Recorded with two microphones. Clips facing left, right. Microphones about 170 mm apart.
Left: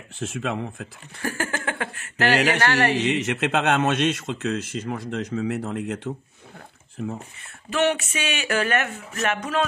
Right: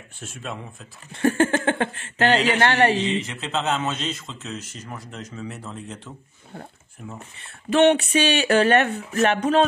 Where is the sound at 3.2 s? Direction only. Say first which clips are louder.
Left 4 dB; 75° left (ahead or behind).